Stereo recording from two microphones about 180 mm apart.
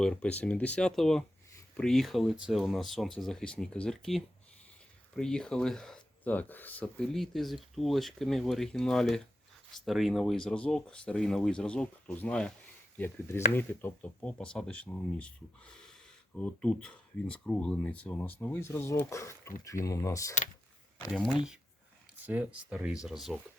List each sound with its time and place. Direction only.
0.0 s speech: 5° left (ahead or behind)
16.3 s speech: 5° left (ahead or behind)
21.1 s speech: centre (ahead or behind)